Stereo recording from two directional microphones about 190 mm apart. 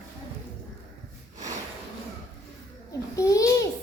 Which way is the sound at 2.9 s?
15° left (ahead or behind).